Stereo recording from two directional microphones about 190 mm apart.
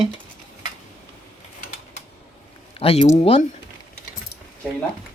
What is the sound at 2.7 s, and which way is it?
Speech, 30° left (ahead or behind).